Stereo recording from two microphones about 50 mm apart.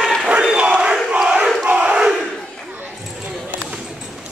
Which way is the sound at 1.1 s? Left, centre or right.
Centre.